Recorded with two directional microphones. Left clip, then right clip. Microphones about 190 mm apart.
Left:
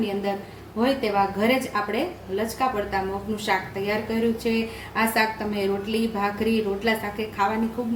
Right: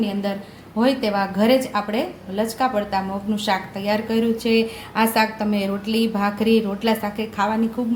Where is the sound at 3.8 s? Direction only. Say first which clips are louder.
Right 3 dB; 45° right (ahead or behind).